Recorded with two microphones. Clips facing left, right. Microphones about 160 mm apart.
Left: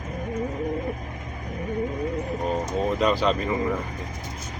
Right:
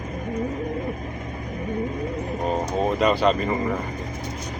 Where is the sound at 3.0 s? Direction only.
Centre (ahead or behind).